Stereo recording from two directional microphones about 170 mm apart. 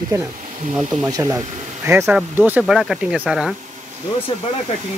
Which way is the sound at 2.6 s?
Centre (ahead or behind).